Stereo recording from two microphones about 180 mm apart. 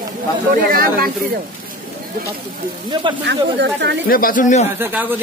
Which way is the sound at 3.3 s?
70° right (ahead or behind).